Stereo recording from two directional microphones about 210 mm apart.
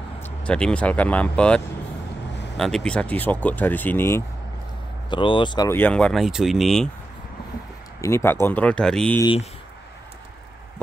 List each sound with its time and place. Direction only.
0.2 s speech: 5° left (ahead or behind)
5.1 s speech: 25° left (ahead or behind); by 6.9 s centre (ahead or behind)
8.0 s speech: 10° left (ahead or behind)
9.2 s speech: 25° left (ahead or behind)